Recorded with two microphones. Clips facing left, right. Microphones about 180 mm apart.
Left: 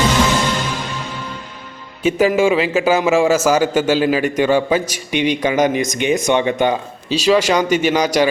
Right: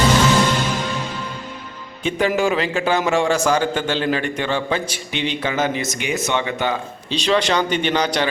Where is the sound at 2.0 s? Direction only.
5° left (ahead or behind).